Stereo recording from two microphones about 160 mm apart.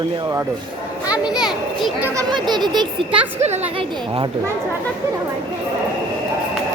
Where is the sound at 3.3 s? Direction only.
45° right (ahead or behind).